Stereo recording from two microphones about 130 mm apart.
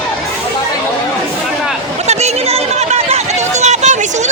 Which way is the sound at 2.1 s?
55° right (ahead or behind).